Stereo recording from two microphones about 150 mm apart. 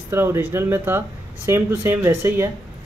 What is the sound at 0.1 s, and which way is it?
Speech, 15° right (ahead or behind).